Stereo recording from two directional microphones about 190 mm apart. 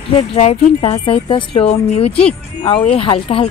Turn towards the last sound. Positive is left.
turn(degrees=30)  # may be behind; listen again after turning